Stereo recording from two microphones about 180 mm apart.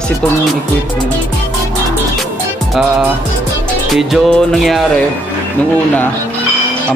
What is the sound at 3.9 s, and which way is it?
Music, centre (ahead or behind).